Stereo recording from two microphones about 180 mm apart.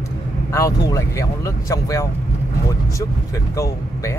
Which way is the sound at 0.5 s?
20° left (ahead or behind).